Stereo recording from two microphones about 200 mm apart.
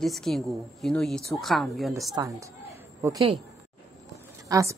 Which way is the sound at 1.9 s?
15° right (ahead or behind).